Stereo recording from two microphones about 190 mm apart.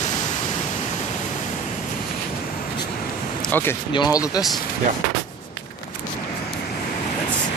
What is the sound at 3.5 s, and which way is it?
Speech, 10° left (ahead or behind).